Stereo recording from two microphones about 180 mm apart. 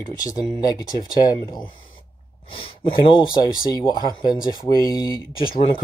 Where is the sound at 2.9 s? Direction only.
25° left (ahead or behind).